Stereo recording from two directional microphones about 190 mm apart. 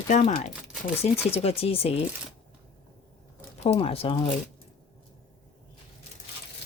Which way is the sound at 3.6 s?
30° left (ahead or behind).